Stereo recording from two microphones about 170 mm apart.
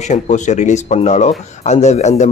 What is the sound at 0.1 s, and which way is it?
A man's voice, 45° left (ahead or behind).